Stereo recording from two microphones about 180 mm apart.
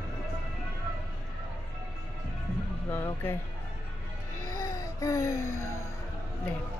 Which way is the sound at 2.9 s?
10° left (ahead or behind).